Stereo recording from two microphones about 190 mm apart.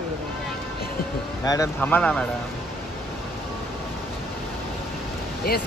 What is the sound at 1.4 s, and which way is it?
Speech, 15° left (ahead or behind).